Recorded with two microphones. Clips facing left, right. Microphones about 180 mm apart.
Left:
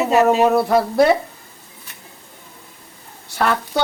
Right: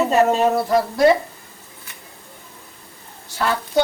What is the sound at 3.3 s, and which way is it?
Speech, 70° left (ahead or behind).